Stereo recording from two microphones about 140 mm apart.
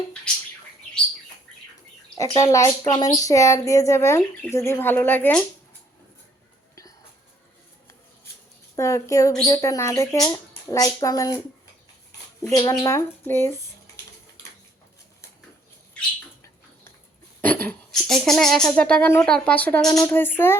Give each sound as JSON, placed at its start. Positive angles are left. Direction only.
{"t": 2.1, "sound": "speech", "side_deg": 25}
{"t": 8.7, "sound": "speech", "side_deg": 20}
{"t": 12.4, "sound": "speech", "side_deg": 25}
{"t": 17.4, "sound": "speech", "side_deg": 10}
{"t": 19.8, "sound": "speech", "side_deg": 25}